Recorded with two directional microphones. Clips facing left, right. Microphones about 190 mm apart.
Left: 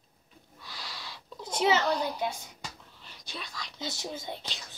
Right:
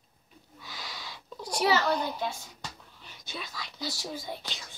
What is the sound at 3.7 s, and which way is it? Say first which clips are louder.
Speech: even; 20° left (ahead or behind).